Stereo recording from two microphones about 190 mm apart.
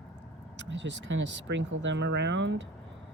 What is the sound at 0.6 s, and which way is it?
A woman's voice, 70° right (ahead or behind).